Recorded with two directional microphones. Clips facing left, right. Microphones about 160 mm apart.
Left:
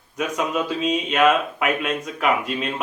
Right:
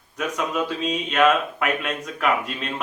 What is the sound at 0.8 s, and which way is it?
Speech, 5° left (ahead or behind).